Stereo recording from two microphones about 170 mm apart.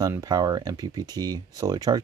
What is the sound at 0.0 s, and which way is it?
Speech, 20° right (ahead or behind).